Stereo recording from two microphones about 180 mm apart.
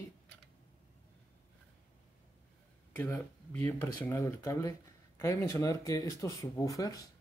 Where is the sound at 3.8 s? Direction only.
15° left (ahead or behind).